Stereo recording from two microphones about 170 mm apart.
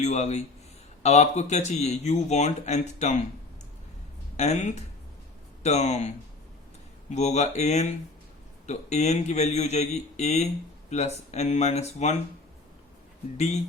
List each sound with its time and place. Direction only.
0.0 s speech: 40° left (ahead or behind)
4.4 s speech: 40° left (ahead or behind)
13.3 s speech: 40° left (ahead or behind)